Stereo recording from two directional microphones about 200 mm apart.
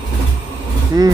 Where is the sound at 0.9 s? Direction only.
20° right (ahead or behind).